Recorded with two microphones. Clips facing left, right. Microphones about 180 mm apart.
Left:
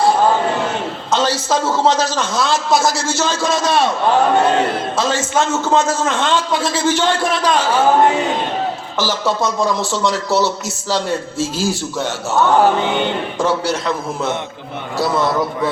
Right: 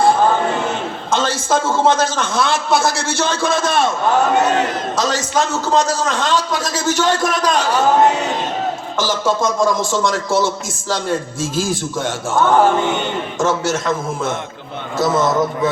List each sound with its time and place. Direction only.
1.1 s a man's voice: 50° right (ahead or behind)
4.9 s a man's voice: 40° right (ahead or behind)
9.0 s a man's voice: 45° right (ahead or behind)